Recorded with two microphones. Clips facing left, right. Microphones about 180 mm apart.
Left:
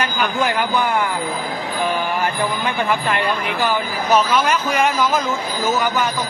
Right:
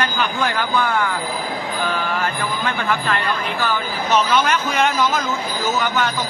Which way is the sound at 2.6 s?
15° left (ahead or behind).